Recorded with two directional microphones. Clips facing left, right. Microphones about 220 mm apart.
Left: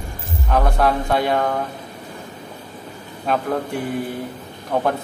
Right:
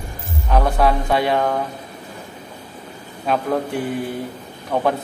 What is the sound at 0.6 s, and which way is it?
Speech, centre (ahead or behind).